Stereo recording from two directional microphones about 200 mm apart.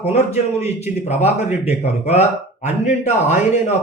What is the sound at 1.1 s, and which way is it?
A man's voice, 35° left (ahead or behind).